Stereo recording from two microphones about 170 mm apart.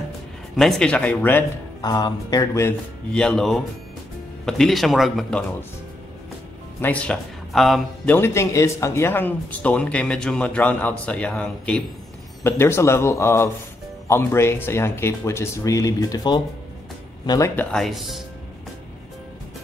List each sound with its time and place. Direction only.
0.6 s speech: 5° left (ahead or behind)
1.8 s speech: 25° left (ahead or behind)
3.1 s speech: 5° left (ahead or behind)
6.8 s speech: 10° left (ahead or behind)
8.1 s speech: 15° left (ahead or behind)
17.6 s speech: 5° left (ahead or behind)